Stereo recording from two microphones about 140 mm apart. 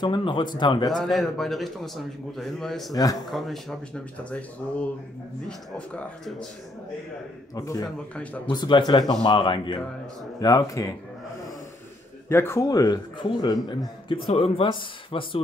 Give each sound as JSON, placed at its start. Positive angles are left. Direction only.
{"t": 0.0, "sound": "a man's voice", "side_deg": 35}
{"t": 0.9, "sound": "a man's voice", "side_deg": 0}
{"t": 2.9, "sound": "speech", "side_deg": 25}
{"t": 3.3, "sound": "a man's voice", "side_deg": 0}
{"t": 7.5, "sound": "speech", "side_deg": 25}
{"t": 8.1, "sound": "speech", "side_deg": 10}
{"t": 8.5, "sound": "a man's voice", "side_deg": 35}
{"t": 12.3, "sound": "a man's voice", "side_deg": 20}